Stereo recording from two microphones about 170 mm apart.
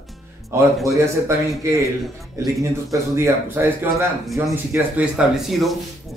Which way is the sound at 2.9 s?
15° right (ahead or behind).